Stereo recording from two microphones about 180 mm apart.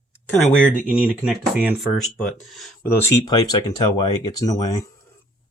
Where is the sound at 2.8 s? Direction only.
10° left (ahead or behind).